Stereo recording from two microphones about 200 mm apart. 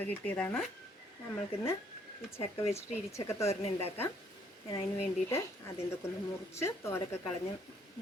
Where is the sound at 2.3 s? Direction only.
30° left (ahead or behind).